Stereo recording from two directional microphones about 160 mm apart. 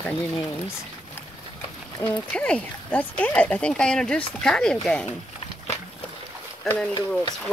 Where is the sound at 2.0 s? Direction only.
15° left (ahead or behind).